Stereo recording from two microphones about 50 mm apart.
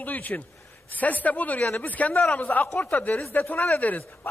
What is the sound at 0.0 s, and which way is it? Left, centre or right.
A man's voice, left.